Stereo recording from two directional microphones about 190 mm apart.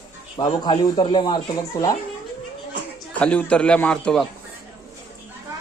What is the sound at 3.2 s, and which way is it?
A man's voice, 5° left (ahead or behind).